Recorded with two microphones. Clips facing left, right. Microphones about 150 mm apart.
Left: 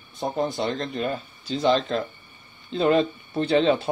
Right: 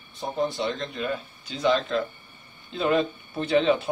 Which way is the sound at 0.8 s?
35° left (ahead or behind).